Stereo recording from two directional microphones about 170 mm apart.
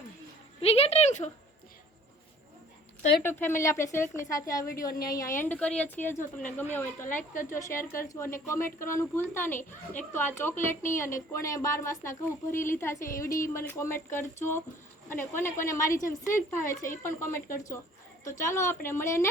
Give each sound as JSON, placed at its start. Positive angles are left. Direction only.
{"t": 0.6, "sound": "speech", "side_deg": 35}
{"t": 3.2, "sound": "a woman's voice", "side_deg": 15}